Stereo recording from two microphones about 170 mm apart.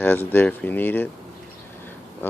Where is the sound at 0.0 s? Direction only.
10° left (ahead or behind).